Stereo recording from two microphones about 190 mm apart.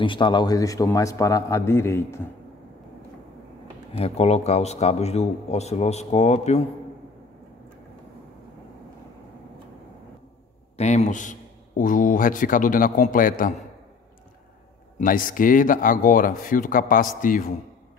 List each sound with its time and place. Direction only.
0.0 s a man's voice: 25° left (ahead or behind)
3.9 s speech: 30° left (ahead or behind)
10.8 s a man's voice: 35° left (ahead or behind)
15.0 s a man's voice: 45° left (ahead or behind)